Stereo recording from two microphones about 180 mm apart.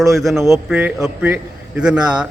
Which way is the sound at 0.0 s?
Centre (ahead or behind).